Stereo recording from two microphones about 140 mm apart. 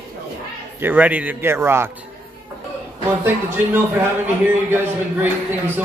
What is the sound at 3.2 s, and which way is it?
Speech, 15° right (ahead or behind).